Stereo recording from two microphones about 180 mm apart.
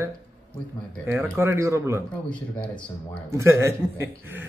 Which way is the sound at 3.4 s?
15° right (ahead or behind).